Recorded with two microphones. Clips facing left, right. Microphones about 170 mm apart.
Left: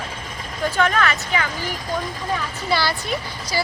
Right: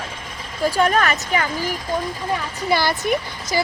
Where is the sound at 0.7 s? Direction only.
35° right (ahead or behind).